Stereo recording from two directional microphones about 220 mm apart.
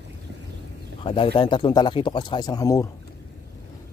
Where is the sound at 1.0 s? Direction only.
25° left (ahead or behind).